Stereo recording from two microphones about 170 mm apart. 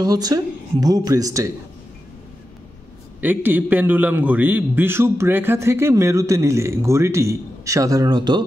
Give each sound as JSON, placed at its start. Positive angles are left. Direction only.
{"t": 0.0, "sound": "speech", "side_deg": -20}
{"t": 3.2, "sound": "a man's voice", "side_deg": -10}